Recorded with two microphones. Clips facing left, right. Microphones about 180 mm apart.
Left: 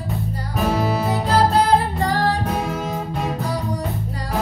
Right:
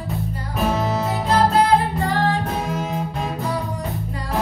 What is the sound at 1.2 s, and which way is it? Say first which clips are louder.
Music: right 1 dB; 35° left (ahead or behind).